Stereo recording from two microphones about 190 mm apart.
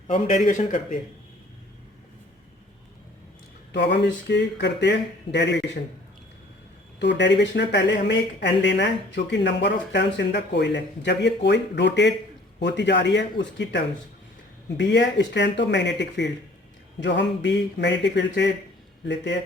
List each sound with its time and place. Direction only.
0.1 s a man's voice: 45° left (ahead or behind)
3.7 s speech: 65° left (ahead or behind)
7.0 s a man's voice: 65° left (ahead or behind)